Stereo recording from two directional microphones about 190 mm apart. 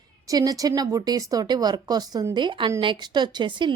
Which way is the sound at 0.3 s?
20° right (ahead or behind).